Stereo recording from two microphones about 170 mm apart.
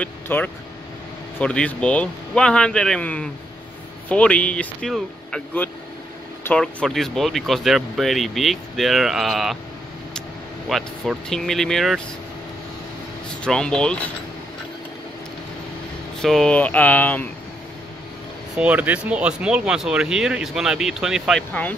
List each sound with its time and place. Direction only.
0.0 s a man's voice: 10° left (ahead or behind)
10.7 s speech: centre (ahead or behind)
13.4 s speech: 5° left (ahead or behind)
16.2 s a man's voice: centre (ahead or behind)
18.6 s speech: 10° right (ahead or behind)